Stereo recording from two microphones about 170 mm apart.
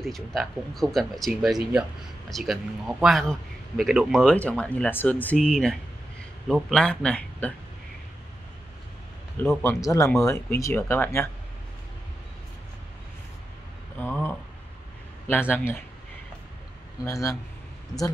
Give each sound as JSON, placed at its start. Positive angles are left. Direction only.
{"t": 0.0, "sound": "speech", "side_deg": 0}
{"t": 9.4, "sound": "speech", "side_deg": 10}
{"t": 13.9, "sound": "a sound", "side_deg": 15}
{"t": 15.5, "sound": "speech", "side_deg": 10}
{"t": 17.0, "sound": "speech", "side_deg": 20}